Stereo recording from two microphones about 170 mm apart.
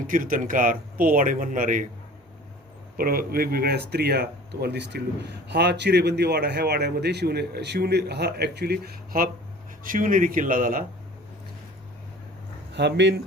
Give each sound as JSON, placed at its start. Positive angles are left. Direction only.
{"t": 0.1, "sound": "speech", "side_deg": -55}
{"t": 3.0, "sound": "speech", "side_deg": -60}
{"t": 12.7, "sound": "speech", "side_deg": -90}